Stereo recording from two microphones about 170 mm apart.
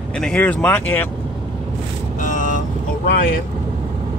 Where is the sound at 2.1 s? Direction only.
50° left (ahead or behind).